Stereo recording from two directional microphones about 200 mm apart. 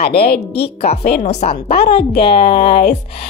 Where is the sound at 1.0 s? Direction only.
45° left (ahead or behind).